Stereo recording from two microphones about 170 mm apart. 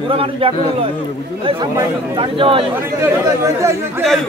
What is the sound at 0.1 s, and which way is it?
Speech, 35° right (ahead or behind).